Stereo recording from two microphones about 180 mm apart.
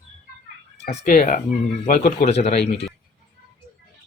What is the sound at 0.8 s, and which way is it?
Speech, 40° left (ahead or behind).